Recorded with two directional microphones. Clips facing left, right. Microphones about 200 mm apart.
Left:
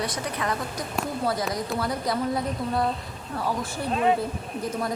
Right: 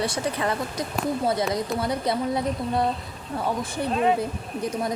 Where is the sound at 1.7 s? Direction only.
Centre (ahead or behind).